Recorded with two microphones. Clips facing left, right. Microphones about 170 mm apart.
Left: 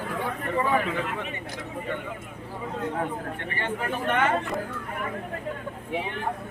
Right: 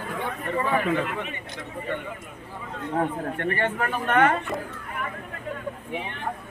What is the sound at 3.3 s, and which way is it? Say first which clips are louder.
Speech: right 5 dB; 55° right (ahead or behind).